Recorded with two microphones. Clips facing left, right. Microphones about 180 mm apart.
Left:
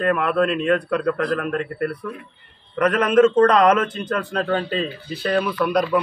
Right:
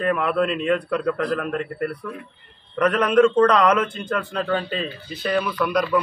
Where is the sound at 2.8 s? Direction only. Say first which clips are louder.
Left 1 dB; 5° left (ahead or behind).